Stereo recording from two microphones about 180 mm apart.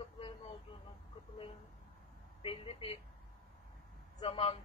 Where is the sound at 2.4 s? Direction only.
30° left (ahead or behind).